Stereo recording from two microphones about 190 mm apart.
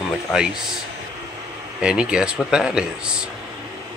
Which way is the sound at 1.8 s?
5° right (ahead or behind).